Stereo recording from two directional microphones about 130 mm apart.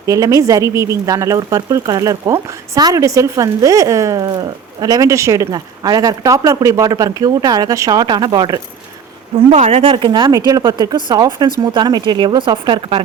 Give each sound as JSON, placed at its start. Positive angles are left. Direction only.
{"t": 0.0, "sound": "speech", "side_deg": -25}
{"t": 9.5, "sound": "speech", "side_deg": -60}
{"t": 10.0, "sound": "speech", "side_deg": -40}